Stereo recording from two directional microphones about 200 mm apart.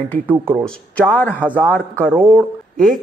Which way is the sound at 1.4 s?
5° right (ahead or behind).